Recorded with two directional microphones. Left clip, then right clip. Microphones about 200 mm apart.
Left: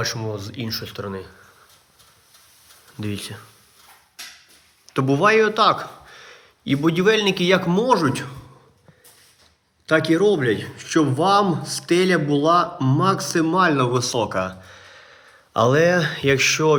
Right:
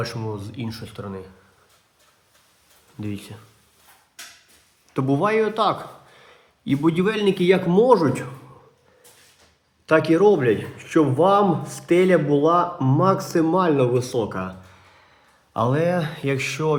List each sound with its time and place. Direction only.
0.0 s speech: centre (ahead or behind)
3.0 s speech: centre (ahead or behind)
4.9 s speech: 5° right (ahead or behind)
8.0 s a man's voice: 25° left (ahead or behind)
9.8 s a man's voice: 10° left (ahead or behind)
13.8 s speech: 5° left (ahead or behind)